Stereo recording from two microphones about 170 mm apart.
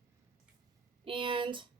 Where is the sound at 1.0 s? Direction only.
30° right (ahead or behind).